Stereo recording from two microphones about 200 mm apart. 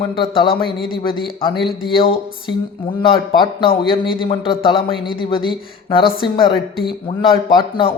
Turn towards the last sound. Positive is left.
turn(degrees=25)  # may be behind; listen again after turning